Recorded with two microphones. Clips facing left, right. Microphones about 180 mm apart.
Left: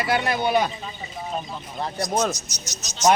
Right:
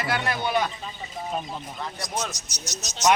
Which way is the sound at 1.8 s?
35° left (ahead or behind).